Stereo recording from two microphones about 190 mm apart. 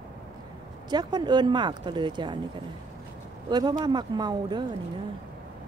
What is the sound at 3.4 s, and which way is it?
Speech, 20° right (ahead or behind).